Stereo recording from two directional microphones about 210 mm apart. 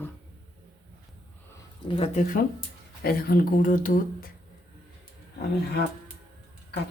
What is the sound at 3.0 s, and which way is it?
Speech, 45° left (ahead or behind).